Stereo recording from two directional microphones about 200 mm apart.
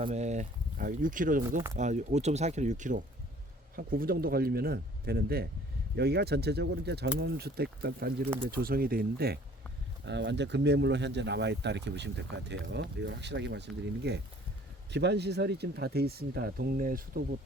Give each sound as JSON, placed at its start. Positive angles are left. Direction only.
{"t": 0.0, "sound": "speech", "side_deg": -35}